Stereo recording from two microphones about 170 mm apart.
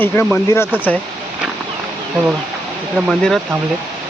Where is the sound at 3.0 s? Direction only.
Centre (ahead or behind).